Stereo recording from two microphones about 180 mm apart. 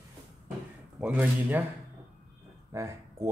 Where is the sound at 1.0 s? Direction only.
10° right (ahead or behind).